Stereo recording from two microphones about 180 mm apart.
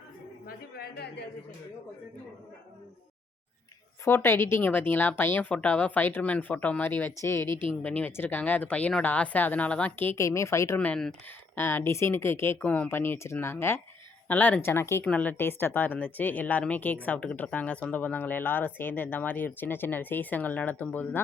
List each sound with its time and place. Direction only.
0.4 s a woman's voice: 60° left (ahead or behind)
4.0 s a woman's voice: 15° left (ahead or behind)